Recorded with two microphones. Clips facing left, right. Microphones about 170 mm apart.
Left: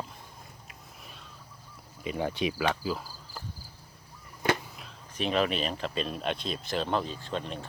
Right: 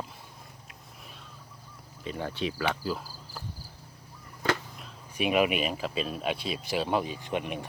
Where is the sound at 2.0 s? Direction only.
15° left (ahead or behind).